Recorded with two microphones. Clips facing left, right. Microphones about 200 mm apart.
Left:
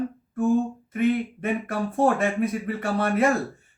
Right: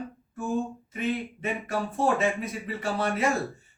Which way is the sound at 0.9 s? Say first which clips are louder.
Left 8 dB; 50° left (ahead or behind).